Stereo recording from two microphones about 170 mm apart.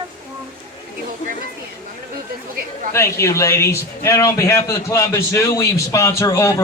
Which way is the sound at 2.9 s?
15° left (ahead or behind).